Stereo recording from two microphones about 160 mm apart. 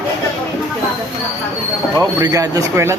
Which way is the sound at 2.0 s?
20° right (ahead or behind).